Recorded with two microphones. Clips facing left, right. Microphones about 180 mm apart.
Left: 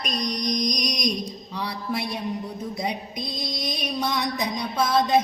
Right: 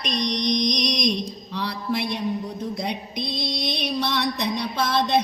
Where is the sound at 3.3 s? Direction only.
75° right (ahead or behind).